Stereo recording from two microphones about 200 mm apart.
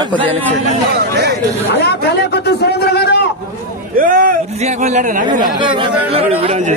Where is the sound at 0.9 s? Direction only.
55° right (ahead or behind).